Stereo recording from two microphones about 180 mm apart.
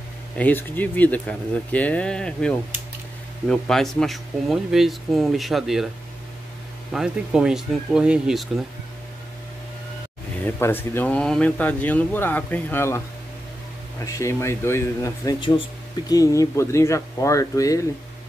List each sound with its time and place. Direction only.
0.4 s speech: 10° left (ahead or behind)
6.9 s speech: 5° right (ahead or behind)
10.4 s speech: 10° left (ahead or behind)
14.0 s speech: 15° left (ahead or behind)